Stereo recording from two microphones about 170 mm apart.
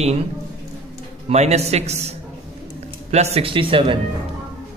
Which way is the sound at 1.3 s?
40° right (ahead or behind).